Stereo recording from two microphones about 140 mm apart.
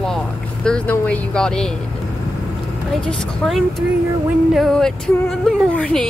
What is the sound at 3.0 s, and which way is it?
Speech, 5° left (ahead or behind).